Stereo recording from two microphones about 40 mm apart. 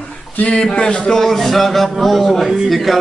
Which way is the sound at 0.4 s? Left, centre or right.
Left.